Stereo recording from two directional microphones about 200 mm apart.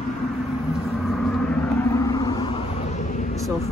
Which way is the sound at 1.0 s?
Centre (ahead or behind).